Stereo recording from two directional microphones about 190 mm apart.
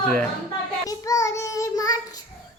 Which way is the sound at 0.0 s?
5° left (ahead or behind).